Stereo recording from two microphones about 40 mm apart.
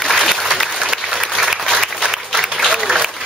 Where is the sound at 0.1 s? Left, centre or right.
Centre.